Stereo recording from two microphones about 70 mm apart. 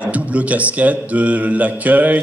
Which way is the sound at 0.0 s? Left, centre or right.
Right.